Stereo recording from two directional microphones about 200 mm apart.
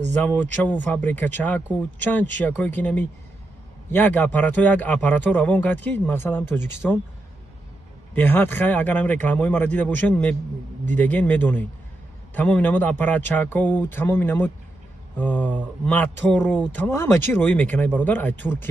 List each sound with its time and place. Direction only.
0.1 s a man's voice: 10° left (ahead or behind)
8.1 s a man's voice: 10° left (ahead or behind)